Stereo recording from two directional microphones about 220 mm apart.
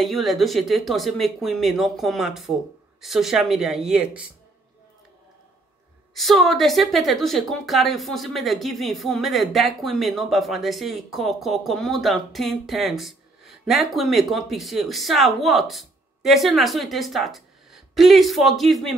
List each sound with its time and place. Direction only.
0.0 s a woman's voice: centre (ahead or behind)
6.1 s a woman's voice: centre (ahead or behind)